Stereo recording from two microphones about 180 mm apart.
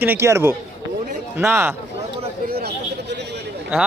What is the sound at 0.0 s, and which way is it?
A man's voice, 10° right (ahead or behind).